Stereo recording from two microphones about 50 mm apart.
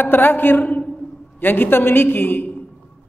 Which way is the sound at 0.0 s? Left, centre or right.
Left.